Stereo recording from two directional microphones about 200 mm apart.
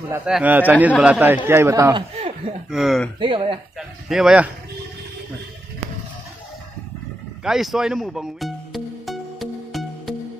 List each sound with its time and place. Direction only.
0.1 s a man's voice: 5° right (ahead or behind)
2.7 s speech: centre (ahead or behind)
3.2 s speech: 25° right (ahead or behind)
3.7 s speech: 5° right (ahead or behind)
7.4 s music: centre (ahead or behind)